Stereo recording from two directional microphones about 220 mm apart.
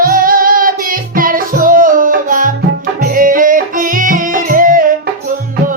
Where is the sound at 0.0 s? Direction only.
40° right (ahead or behind).